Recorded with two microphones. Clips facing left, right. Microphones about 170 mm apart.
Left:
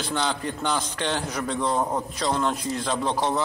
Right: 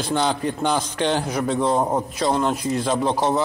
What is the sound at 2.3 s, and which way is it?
Speech, 15° right (ahead or behind).